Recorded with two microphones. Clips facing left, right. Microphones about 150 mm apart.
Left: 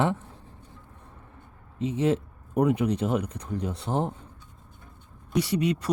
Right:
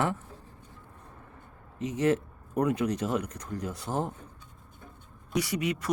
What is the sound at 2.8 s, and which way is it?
Speech, 25° left (ahead or behind).